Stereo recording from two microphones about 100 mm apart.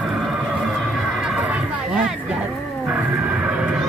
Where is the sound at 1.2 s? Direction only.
10° right (ahead or behind).